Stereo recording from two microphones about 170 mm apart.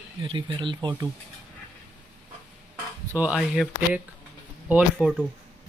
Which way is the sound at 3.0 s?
10° right (ahead or behind).